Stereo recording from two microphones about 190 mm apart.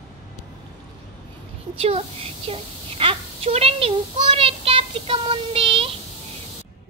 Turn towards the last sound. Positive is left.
turn(degrees=-30)  # may be behind; listen again after turning